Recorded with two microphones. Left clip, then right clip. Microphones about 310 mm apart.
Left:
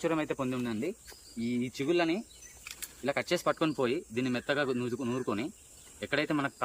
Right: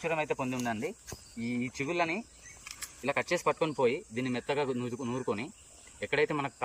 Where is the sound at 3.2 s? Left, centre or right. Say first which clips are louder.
Right 1 dB; centre.